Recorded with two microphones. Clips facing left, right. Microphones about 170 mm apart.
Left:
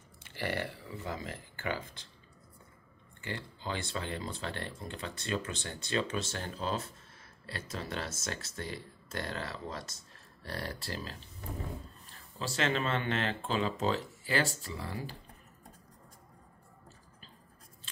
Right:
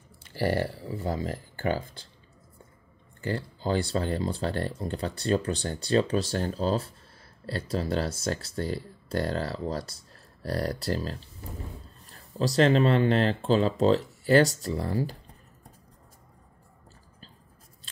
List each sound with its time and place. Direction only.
0.2 s speech: 35° right (ahead or behind)
3.2 s speech: 40° right (ahead or behind)